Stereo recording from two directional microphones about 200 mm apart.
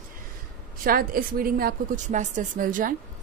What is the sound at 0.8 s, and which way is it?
A woman's voice, 45° right (ahead or behind).